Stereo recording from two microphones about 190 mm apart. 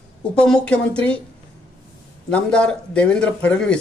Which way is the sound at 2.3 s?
5° left (ahead or behind).